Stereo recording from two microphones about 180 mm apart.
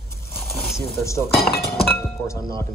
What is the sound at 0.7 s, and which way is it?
Speech, 15° left (ahead or behind).